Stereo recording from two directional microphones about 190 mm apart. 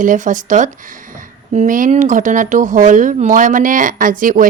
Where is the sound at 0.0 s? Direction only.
45° right (ahead or behind).